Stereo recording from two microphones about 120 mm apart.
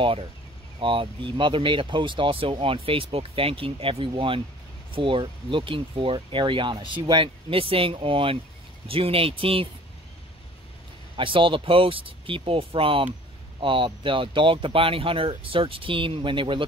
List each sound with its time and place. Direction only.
0.7 s speech: 45° right (ahead or behind)
11.1 s speech: 45° right (ahead or behind)